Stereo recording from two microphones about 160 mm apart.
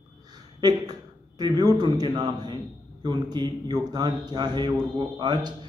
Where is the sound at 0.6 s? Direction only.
25° right (ahead or behind).